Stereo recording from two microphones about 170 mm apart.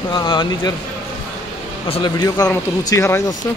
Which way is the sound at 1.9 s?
25° left (ahead or behind).